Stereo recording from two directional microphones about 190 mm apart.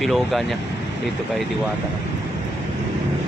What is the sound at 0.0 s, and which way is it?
Speech, centre (ahead or behind).